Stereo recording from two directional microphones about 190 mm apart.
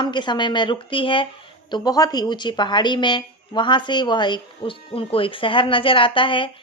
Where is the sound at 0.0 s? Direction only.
25° left (ahead or behind).